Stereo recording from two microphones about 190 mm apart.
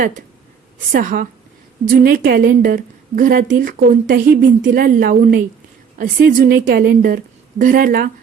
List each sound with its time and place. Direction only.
0.9 s a woman's voice: 45° right (ahead or behind)